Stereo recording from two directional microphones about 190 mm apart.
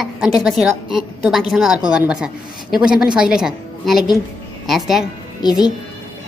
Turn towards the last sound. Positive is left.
turn(degrees=20)  # may be behind; listen again after turning